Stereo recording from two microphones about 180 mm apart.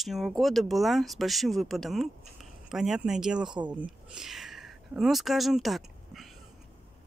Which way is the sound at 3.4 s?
25° right (ahead or behind).